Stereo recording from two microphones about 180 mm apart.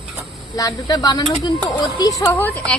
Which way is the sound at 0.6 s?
20° left (ahead or behind).